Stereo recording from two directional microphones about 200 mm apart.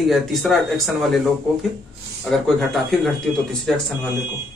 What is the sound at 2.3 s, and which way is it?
Speech, centre (ahead or behind).